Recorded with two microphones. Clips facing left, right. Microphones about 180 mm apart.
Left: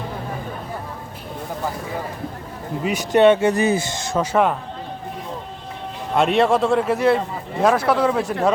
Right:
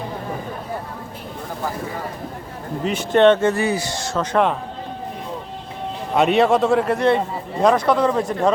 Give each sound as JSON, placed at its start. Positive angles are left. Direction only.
{"t": 2.8, "sound": "speech", "side_deg": 10}
{"t": 6.1, "sound": "a man's voice", "side_deg": 0}